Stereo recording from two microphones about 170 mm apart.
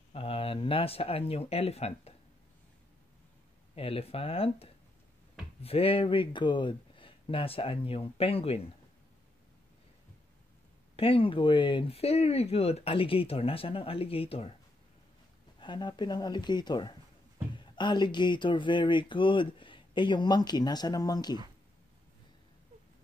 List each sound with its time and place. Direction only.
0.1 s speech: 35° left (ahead or behind)
3.7 s speech: 35° left (ahead or behind)
11.0 s speech: 35° left (ahead or behind)
15.6 s speech: 25° left (ahead or behind)